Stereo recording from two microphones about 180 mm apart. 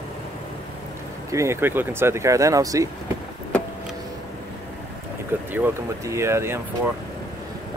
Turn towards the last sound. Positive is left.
turn(degrees=-15)  # may be behind; listen again after turning